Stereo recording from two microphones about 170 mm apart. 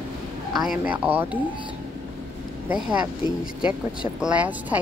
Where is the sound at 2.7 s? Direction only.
5° right (ahead or behind).